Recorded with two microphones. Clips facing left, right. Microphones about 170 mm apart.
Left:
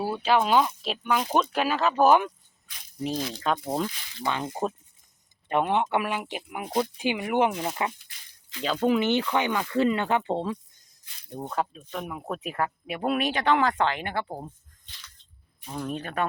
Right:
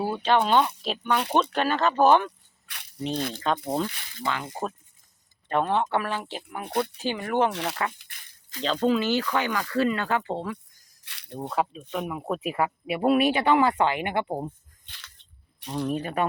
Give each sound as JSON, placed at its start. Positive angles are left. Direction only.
{"t": 0.0, "sound": "speech", "side_deg": 5}
{"t": 2.6, "sound": "rattle", "side_deg": -70}
{"t": 3.1, "sound": "speech", "side_deg": -60}
{"t": 3.4, "sound": "speech", "side_deg": 0}
{"t": 4.2, "sound": "speech", "side_deg": 20}
{"t": 5.5, "sound": "speech", "side_deg": 15}
{"t": 7.5, "sound": "speech", "side_deg": -80}
{"t": 7.9, "sound": "a sound", "side_deg": -55}
{"t": 8.6, "sound": "speech", "side_deg": 10}
{"t": 11.0, "sound": "a sound", "side_deg": -75}
{"t": 11.3, "sound": "speech", "side_deg": -5}
{"t": 14.8, "sound": "a sound", "side_deg": -65}
{"t": 15.9, "sound": "speech", "side_deg": -5}